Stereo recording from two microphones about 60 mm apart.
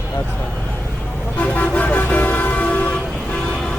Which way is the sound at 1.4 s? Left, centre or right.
Left.